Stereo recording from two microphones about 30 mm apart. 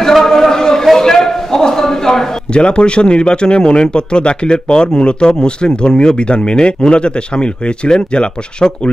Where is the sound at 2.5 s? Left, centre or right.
Left.